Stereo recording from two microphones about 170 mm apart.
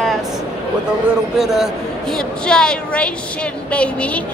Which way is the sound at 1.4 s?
Centre (ahead or behind).